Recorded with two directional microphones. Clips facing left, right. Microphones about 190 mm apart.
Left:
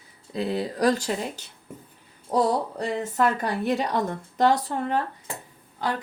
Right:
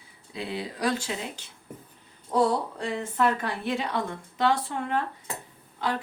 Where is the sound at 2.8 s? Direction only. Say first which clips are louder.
Left 2 dB; 40° left (ahead or behind).